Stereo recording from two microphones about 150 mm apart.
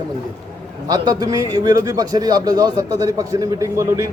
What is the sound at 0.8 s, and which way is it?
A man's voice, 25° right (ahead or behind).